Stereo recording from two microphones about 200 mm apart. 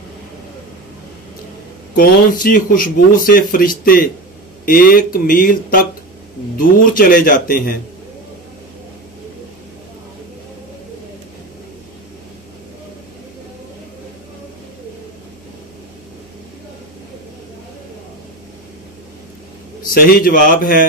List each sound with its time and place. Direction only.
2.0 s speech: 45° left (ahead or behind)
19.9 s speech: 45° left (ahead or behind)